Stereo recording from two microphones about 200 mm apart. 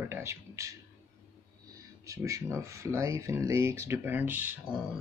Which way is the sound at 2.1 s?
15° right (ahead or behind).